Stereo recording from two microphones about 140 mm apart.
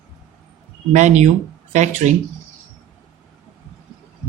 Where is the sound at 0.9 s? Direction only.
55° right (ahead or behind).